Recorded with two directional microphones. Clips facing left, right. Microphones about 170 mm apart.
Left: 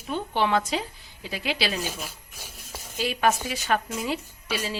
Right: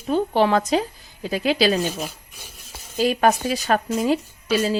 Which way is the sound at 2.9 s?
40° right (ahead or behind).